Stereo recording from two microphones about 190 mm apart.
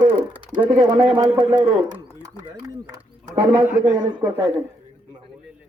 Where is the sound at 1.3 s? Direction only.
5° right (ahead or behind).